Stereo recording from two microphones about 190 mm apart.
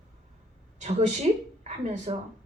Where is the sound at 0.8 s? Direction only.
35° right (ahead or behind).